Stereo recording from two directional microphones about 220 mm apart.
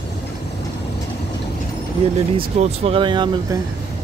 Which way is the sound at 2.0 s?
25° right (ahead or behind).